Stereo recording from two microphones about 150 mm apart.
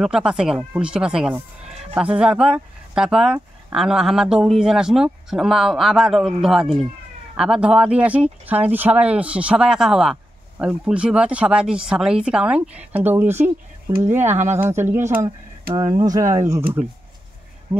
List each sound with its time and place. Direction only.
0.0 s speech: 5° right (ahead or behind)